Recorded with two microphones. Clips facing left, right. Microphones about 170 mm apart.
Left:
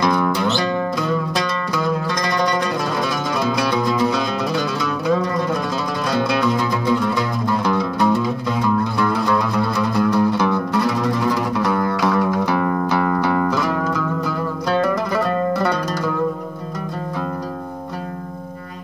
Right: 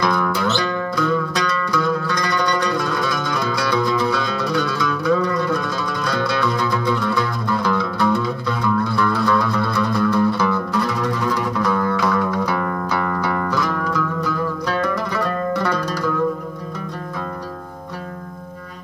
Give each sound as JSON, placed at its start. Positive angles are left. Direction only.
{"t": 0.0, "sound": "music", "side_deg": 15}
{"t": 6.0, "sound": "music", "side_deg": 10}
{"t": 7.7, "sound": "music", "side_deg": 15}
{"t": 12.1, "sound": "music", "side_deg": 35}
{"t": 12.6, "sound": "music", "side_deg": 20}